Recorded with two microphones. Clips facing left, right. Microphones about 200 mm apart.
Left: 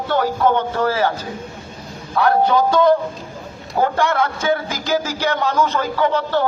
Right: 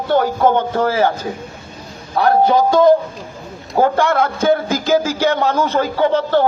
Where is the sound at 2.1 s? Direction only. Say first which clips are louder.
Right 2 dB; 25° right (ahead or behind).